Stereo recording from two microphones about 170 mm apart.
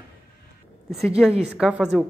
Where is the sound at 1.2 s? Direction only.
5° left (ahead or behind).